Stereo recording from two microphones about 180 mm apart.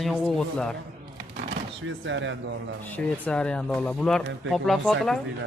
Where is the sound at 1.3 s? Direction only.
75° right (ahead or behind).